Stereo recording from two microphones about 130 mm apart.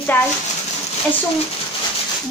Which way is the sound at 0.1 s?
15° left (ahead or behind).